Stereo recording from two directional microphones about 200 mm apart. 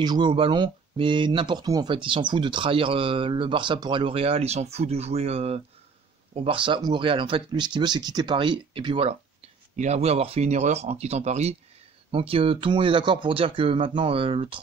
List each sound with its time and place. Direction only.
0.0 s speech: 20° right (ahead or behind)